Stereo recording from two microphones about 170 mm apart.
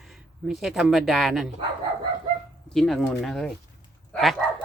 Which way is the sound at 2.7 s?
Centre (ahead or behind).